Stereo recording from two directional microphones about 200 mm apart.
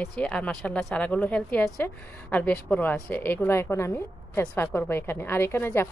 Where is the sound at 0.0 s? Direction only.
5° left (ahead or behind).